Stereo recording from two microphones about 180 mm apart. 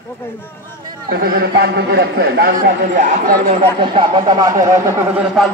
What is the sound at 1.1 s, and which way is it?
A man's voice, 55° right (ahead or behind).